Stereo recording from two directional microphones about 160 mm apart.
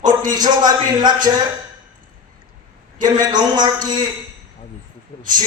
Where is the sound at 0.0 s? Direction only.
55° right (ahead or behind).